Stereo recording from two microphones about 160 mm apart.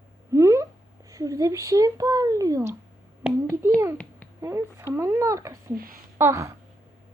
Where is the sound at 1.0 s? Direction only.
20° right (ahead or behind).